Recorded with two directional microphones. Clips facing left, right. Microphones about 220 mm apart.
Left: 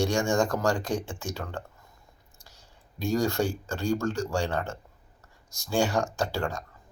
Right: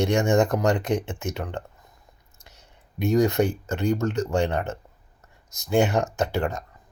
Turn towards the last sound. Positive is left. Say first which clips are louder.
# right 4 dB
turn(degrees=-20)  # may be behind; listen again after turning